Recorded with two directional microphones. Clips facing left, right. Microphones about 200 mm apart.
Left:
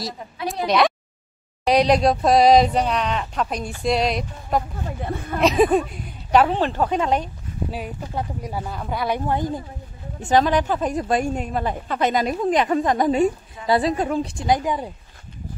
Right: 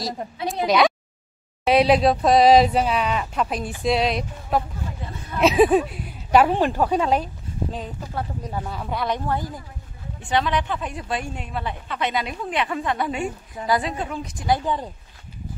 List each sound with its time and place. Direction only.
0.2 s speech: 50° right (ahead or behind)
0.7 s speech: centre (ahead or behind)
5.0 s speech: 55° left (ahead or behind)
5.4 s speech: centre (ahead or behind)
7.7 s speech: 15° left (ahead or behind)
9.2 s speech: 20° left (ahead or behind)
10.2 s a woman's voice: 40° left (ahead or behind)
14.3 s speech: 20° left (ahead or behind)